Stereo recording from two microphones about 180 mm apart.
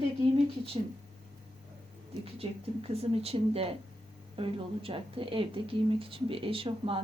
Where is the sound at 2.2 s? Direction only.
35° right (ahead or behind).